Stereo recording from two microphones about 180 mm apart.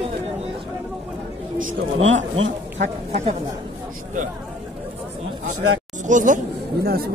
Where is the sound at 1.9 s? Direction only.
90° right.